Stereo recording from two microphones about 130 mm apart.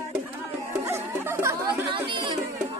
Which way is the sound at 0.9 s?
20° right (ahead or behind).